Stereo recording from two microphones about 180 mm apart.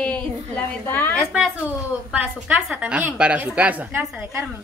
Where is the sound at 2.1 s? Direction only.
10° right (ahead or behind).